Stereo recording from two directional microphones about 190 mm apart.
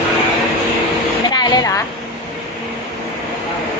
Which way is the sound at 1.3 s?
20° left (ahead or behind).